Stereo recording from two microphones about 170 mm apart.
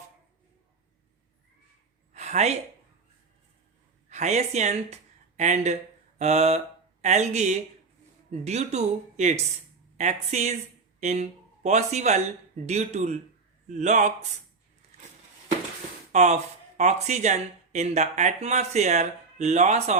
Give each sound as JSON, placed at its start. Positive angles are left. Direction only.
{"t": 2.1, "sound": "a sound", "side_deg": -40}
{"t": 4.1, "sound": "speech", "side_deg": -40}
{"t": 16.1, "sound": "speech", "side_deg": -40}